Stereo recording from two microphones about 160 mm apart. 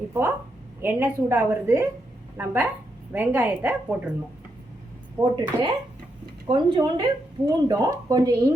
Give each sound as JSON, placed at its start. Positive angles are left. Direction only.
{"t": 0.1, "sound": "a woman's voice", "side_deg": -15}
{"t": 5.2, "sound": "speech", "side_deg": -30}